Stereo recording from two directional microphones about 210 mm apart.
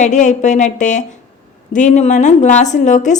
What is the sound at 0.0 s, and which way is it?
A woman's voice, 35° left (ahead or behind).